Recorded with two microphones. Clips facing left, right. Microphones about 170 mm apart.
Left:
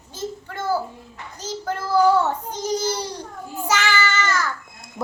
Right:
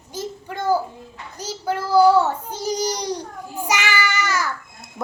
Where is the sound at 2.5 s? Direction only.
15° right (ahead or behind).